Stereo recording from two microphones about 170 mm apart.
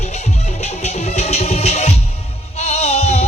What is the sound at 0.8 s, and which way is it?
Music, 40° left (ahead or behind).